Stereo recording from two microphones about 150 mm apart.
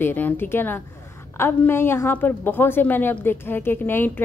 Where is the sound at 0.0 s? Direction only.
15° left (ahead or behind).